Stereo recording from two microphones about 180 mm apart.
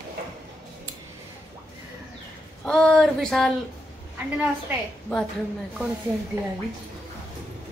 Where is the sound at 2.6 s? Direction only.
5° left (ahead or behind).